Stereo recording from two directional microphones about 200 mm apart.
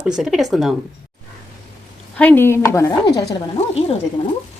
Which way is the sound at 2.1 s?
10° left (ahead or behind).